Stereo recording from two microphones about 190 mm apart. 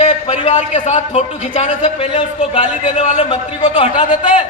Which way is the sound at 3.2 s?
25° left (ahead or behind).